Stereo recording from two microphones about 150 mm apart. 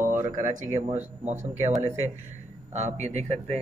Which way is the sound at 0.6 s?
45° right (ahead or behind).